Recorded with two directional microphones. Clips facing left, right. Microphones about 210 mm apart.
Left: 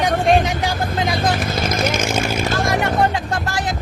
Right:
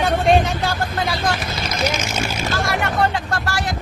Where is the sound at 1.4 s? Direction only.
50° left (ahead or behind).